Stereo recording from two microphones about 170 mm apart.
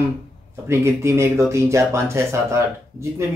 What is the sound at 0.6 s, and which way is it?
Speech, 15° right (ahead or behind).